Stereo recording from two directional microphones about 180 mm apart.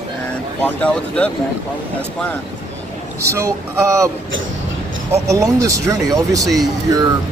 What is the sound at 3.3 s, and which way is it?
Speech, 15° right (ahead or behind).